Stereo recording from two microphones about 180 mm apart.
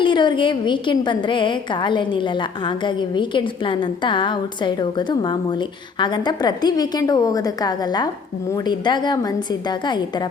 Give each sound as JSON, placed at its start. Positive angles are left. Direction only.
{"t": 0.0, "sound": "a woman's voice", "side_deg": 25}